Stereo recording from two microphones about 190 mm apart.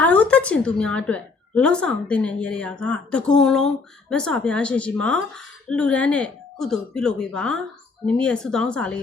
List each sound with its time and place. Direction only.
0.0 s a woman's voice: 5° left (ahead or behind)